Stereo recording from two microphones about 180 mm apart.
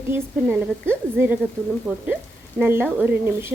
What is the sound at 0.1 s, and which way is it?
Speech, 10° right (ahead or behind).